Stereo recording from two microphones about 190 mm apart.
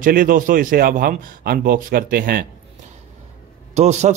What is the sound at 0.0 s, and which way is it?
A man's voice, 45° right (ahead or behind).